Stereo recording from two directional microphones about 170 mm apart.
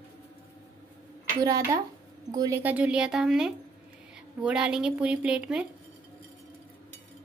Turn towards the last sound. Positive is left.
turn(degrees=-5)  # may be behind; listen again after turning